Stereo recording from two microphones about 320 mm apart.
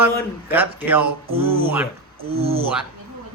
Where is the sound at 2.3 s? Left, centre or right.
Centre.